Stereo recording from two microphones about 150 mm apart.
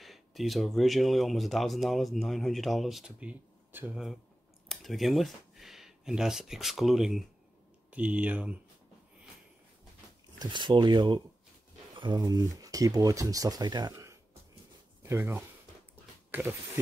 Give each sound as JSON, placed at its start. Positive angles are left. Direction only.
{"t": 0.0, "sound": "speech", "side_deg": 0}
{"t": 4.6, "sound": "speech", "side_deg": 0}
{"t": 10.4, "sound": "speech", "side_deg": -30}